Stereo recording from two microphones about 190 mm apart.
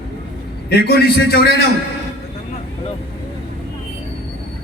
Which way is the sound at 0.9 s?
55° left (ahead or behind).